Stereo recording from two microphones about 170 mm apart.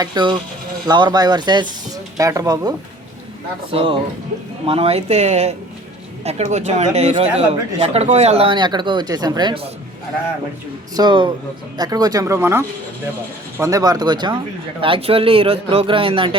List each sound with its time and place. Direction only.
0.0 s speech: 25° right (ahead or behind)
3.7 s a man's voice: 35° right (ahead or behind)
10.9 s a man's voice: 25° right (ahead or behind)